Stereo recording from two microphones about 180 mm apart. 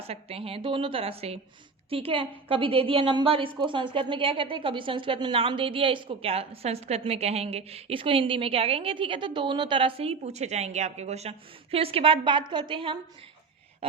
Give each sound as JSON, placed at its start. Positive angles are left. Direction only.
{"t": 0.0, "sound": "a woman's voice", "side_deg": -35}